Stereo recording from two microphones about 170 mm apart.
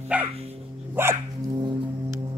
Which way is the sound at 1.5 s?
25° right (ahead or behind).